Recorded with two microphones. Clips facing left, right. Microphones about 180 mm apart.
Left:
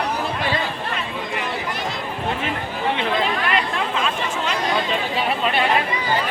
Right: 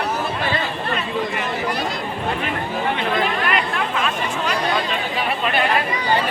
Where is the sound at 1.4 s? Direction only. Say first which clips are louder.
Right 3 dB; 20° left (ahead or behind).